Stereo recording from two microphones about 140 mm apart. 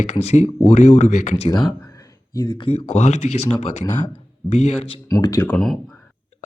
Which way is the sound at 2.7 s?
55° left (ahead or behind).